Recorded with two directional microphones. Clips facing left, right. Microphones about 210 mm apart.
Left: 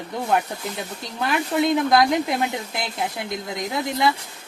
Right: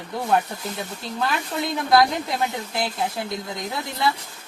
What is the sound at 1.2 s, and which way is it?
Speech, 15° left (ahead or behind).